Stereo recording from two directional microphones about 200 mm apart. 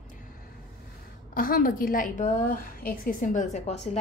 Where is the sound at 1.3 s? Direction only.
45° left (ahead or behind).